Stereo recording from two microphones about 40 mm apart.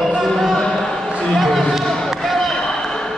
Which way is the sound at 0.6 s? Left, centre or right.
Centre.